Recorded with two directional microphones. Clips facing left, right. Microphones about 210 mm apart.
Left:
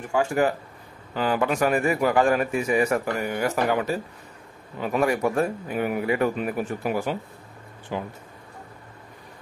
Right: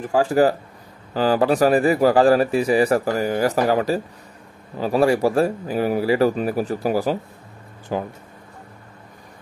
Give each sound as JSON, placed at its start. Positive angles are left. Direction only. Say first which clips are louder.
{"t": 0.0, "sound": "speech", "louder": "right 5 dB", "side_deg": -35}